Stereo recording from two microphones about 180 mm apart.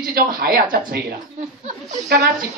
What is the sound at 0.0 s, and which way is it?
Speech, 55° right (ahead or behind).